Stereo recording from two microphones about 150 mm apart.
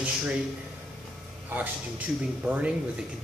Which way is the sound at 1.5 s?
15° right (ahead or behind).